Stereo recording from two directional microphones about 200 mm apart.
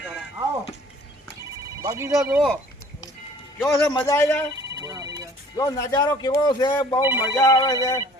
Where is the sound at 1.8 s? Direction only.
15° right (ahead or behind).